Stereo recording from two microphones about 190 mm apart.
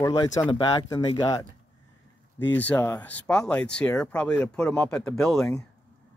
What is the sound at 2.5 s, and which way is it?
Speech, 10° left (ahead or behind).